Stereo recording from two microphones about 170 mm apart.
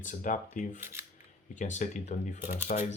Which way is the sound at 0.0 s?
50° left (ahead or behind).